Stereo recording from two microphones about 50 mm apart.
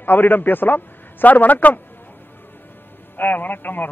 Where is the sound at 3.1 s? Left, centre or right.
Left.